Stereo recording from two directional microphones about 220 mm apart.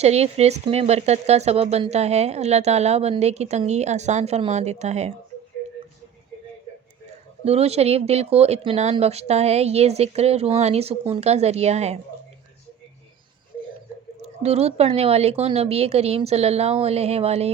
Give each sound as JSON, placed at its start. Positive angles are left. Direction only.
{"t": 0.0, "sound": "speech", "side_deg": -30}
{"t": 7.4, "sound": "speech", "side_deg": -30}
{"t": 14.2, "sound": "speech", "side_deg": -30}